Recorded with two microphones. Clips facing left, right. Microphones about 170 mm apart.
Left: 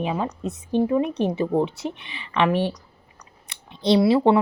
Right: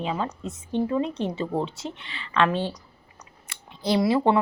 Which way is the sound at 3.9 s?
20° left (ahead or behind).